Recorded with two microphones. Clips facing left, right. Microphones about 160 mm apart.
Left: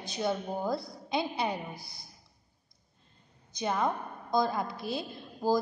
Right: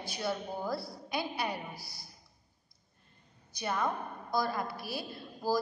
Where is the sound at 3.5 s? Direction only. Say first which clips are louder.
Left 3 dB; 20° left (ahead or behind).